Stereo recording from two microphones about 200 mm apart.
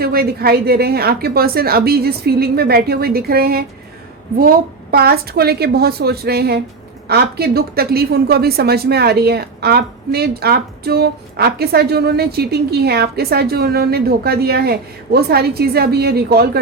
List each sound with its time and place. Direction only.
0.0 s a woman's voice: 50° right (ahead or behind)